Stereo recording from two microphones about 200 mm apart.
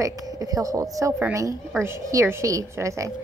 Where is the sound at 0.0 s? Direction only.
15° right (ahead or behind).